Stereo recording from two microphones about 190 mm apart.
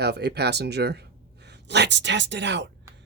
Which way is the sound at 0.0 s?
60° right (ahead or behind).